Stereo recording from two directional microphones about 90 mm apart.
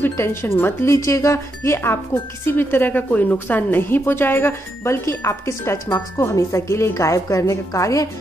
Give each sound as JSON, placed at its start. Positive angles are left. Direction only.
{"t": 0.0, "sound": "a woman's voice", "side_deg": 30}